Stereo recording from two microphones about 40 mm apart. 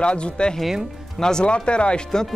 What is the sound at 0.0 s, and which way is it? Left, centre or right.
Speech, left.